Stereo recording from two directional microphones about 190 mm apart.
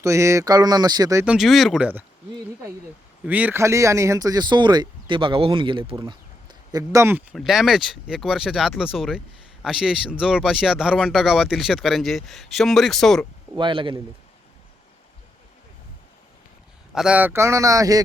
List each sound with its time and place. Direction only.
0.0 s speech: 15° right (ahead or behind)
1.2 s speech: 5° right (ahead or behind)
3.2 s speech: 10° right (ahead or behind)
7.3 s speech: centre (ahead or behind)
13.6 s speech: 25° right (ahead or behind)
16.9 s speech: 5° right (ahead or behind)